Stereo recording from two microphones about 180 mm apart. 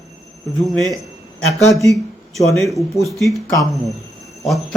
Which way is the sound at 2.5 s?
Centre (ahead or behind).